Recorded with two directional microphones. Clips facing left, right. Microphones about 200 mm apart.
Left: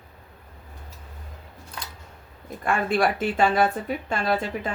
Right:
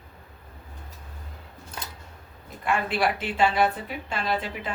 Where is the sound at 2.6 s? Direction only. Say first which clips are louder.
Left 3 dB; 50° left (ahead or behind).